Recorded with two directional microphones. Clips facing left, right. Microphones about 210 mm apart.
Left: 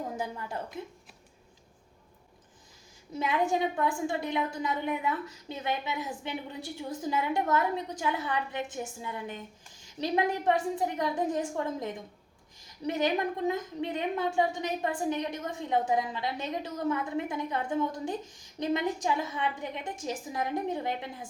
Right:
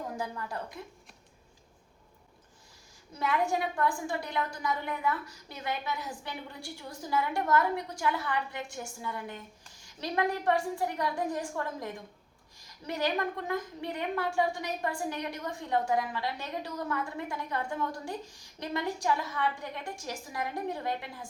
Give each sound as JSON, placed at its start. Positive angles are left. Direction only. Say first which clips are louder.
{"t": 0.2, "sound": "a woman's voice", "louder": "left 1 dB", "side_deg": 20}
{"t": 3.2, "sound": "a woman's voice", "louder": "left 2 dB", "side_deg": 20}